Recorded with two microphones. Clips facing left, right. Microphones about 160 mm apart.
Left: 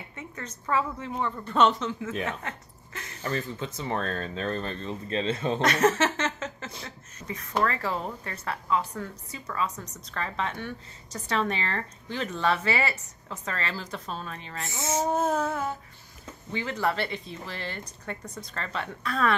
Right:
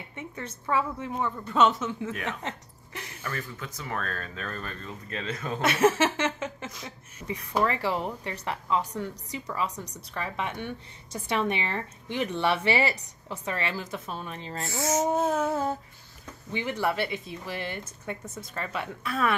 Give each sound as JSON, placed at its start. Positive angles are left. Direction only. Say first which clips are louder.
{"t": 0.1, "sound": "speech", "louder": "right 3 dB", "side_deg": -10}
{"t": 2.4, "sound": "speech", "louder": "right 2 dB", "side_deg": -15}
{"t": 3.2, "sound": "speech", "louder": "left 6 dB", "side_deg": 25}
{"t": 5.6, "sound": "speech", "louder": "right 2 dB", "side_deg": -10}
{"t": 13.8, "sound": "speech", "louder": "even", "side_deg": -5}
{"t": 14.2, "sound": "speech", "louder": "right 1 dB", "side_deg": -25}
{"t": 14.7, "sound": "speech", "louder": "right 2 dB", "side_deg": 25}
{"t": 15.0, "sound": "speech", "louder": "left 3 dB", "side_deg": 0}
{"t": 16.5, "sound": "speech", "louder": "even", "side_deg": -15}